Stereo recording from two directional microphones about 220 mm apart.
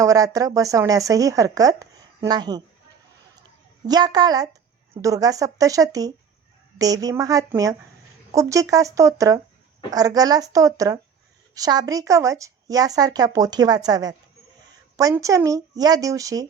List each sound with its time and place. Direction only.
0.0 s speech: 15° right (ahead or behind)
3.8 s speech: 20° right (ahead or behind)